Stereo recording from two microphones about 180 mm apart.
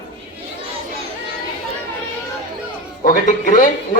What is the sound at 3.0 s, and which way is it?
Speech, 45° left (ahead or behind).